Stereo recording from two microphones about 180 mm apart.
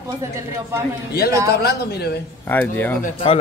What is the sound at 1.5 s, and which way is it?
Speech, 65° left (ahead or behind).